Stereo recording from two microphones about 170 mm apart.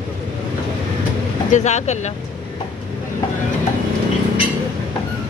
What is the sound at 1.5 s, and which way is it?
Speech, 45° left (ahead or behind).